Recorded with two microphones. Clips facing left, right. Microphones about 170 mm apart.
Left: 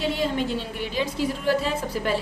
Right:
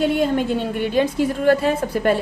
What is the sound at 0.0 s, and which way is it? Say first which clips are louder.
A woman's voice: right 6 dB; 55° right (ahead or behind).